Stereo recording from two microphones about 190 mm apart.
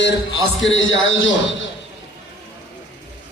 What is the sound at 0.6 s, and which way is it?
Speech, 85° left.